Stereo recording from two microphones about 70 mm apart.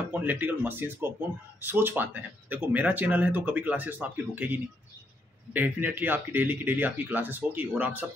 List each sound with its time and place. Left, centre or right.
0.1 s speech: right